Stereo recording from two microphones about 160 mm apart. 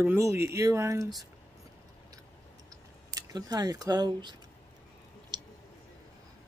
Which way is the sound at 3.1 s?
25° right (ahead or behind).